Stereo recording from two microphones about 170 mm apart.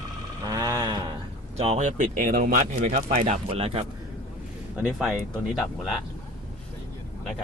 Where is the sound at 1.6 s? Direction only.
40° right (ahead or behind).